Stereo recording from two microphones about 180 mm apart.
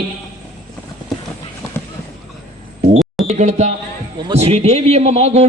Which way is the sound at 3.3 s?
40° right (ahead or behind).